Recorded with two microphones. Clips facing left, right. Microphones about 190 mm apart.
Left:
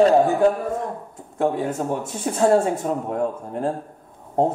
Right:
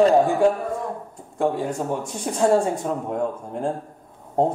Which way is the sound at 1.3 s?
5° left (ahead or behind).